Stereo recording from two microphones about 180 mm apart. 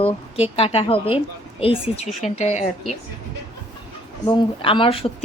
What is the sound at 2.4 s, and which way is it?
Speech, 40° left (ahead or behind).